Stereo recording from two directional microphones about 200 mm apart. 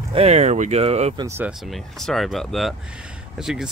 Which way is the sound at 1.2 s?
10° right (ahead or behind).